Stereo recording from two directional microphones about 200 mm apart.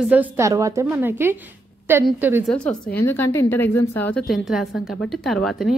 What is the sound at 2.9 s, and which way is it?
A woman's voice, 10° left (ahead or behind).